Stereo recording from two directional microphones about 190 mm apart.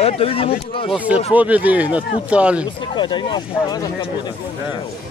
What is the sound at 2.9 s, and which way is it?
Speech, 25° left (ahead or behind).